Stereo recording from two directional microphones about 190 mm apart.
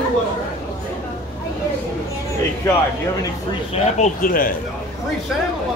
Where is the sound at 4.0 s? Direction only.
45° left (ahead or behind).